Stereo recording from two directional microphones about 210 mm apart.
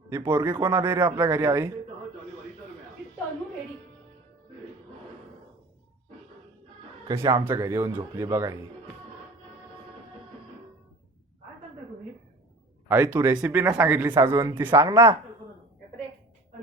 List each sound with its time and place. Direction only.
0.1 s speech: 10° right (ahead or behind)
0.5 s speech: 20° right (ahead or behind)
7.1 s speech: 15° right (ahead or behind)
12.9 s speech: 10° right (ahead or behind)